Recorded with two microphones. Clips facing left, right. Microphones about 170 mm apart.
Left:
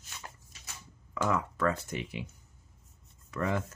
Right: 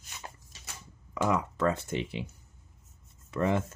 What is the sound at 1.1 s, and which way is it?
Speech, 15° right (ahead or behind).